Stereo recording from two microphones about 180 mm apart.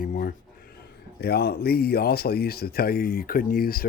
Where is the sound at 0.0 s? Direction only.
50° left (ahead or behind).